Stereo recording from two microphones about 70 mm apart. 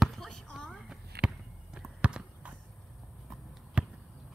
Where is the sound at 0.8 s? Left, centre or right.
Centre.